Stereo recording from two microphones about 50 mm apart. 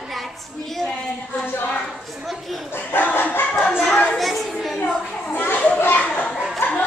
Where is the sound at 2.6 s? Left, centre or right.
Left.